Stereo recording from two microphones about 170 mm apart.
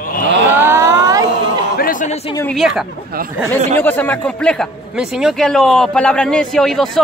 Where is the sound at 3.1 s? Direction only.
60° right (ahead or behind).